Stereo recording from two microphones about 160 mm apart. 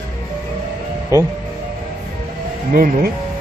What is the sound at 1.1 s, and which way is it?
Speech, 20° right (ahead or behind).